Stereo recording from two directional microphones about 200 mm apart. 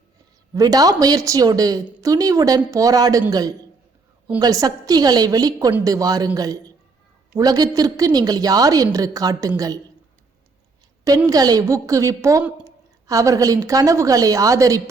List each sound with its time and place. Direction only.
0.5 s a woman's voice: 20° right (ahead or behind)
11.3 s a woman's voice: 20° right (ahead or behind)